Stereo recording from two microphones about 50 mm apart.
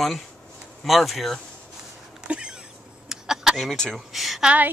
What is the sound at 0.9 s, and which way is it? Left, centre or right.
Speech, centre.